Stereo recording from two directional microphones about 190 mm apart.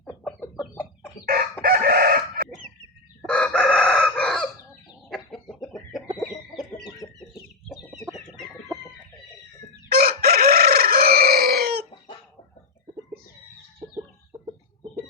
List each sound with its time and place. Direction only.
0.0 s chicken: 5° left (ahead or behind)
1.6 s chicken: 50° right (ahead or behind)
3.2 s chicken: 5° left (ahead or behind)
6.3 s chicken: 20° left (ahead or behind)
7.7 s chicken: 5° right (ahead or behind)
9.9 s chicken: 55° right (ahead or behind)
14.3 s chicken: 25° right (ahead or behind)